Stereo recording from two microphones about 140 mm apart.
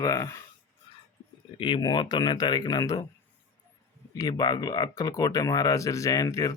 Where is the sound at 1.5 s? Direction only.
35° left (ahead or behind).